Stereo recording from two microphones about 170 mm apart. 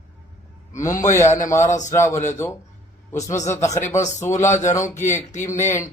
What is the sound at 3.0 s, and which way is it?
Speech, 20° left (ahead or behind).